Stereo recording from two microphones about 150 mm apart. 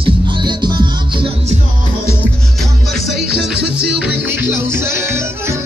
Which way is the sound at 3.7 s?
10° right (ahead or behind).